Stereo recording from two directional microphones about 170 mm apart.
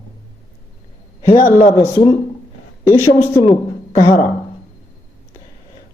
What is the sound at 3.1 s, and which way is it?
Speech, 15° left (ahead or behind).